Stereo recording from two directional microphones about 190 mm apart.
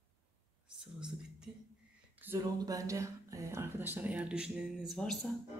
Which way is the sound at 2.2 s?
15° right (ahead or behind).